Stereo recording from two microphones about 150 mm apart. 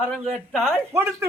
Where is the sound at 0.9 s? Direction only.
15° right (ahead or behind).